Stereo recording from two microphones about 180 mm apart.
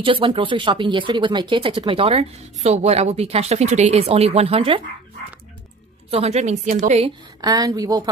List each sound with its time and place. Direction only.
0.0 s speech: 30° right (ahead or behind)
6.0 s speech: 35° right (ahead or behind)
7.4 s speech: 20° right (ahead or behind)